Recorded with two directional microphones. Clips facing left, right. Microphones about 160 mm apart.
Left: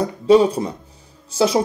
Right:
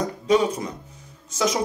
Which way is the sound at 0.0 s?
30° left (ahead or behind).